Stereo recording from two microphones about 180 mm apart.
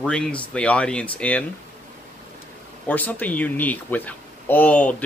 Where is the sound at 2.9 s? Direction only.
10° left (ahead or behind).